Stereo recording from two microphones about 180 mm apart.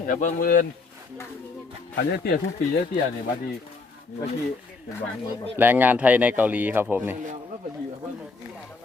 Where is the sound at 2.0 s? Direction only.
65° left (ahead or behind).